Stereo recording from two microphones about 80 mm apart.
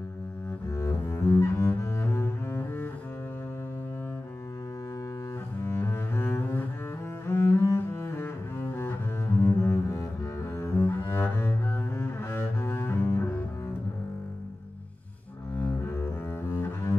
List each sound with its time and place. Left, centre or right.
0.7 s cello: left
5.7 s cello: left
9.4 s double bass: left
10.6 s cello: left
12.0 s double bass: left
15.9 s double bass: left